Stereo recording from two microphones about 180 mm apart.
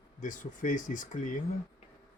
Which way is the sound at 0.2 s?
45° left (ahead or behind).